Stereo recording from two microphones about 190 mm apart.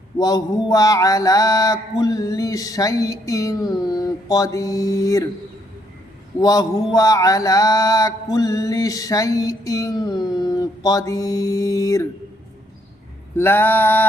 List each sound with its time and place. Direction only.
0.2 s mantra: 20° left (ahead or behind)
6.4 s mantra: 20° left (ahead or behind)
13.3 s mantra: 10° left (ahead or behind)